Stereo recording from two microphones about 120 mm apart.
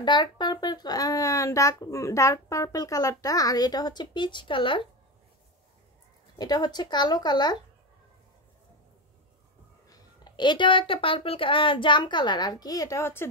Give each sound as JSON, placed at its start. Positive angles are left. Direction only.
{"t": 0.0, "sound": "speech", "side_deg": 40}
{"t": 6.3, "sound": "speech", "side_deg": 35}
{"t": 9.8, "sound": "speech", "side_deg": 35}